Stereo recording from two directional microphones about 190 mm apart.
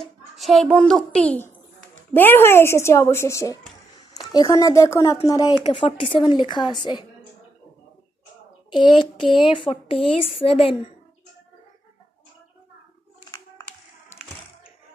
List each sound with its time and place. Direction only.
0.0 s a child's voice: centre (ahead or behind); by 7.1 s 25° left (ahead or behind)
9.4 s speech: 25° left (ahead or behind)
9.9 s a woman's voice: 5° left (ahead or behind)
10.4 s a woman's voice: 30° left (ahead or behind)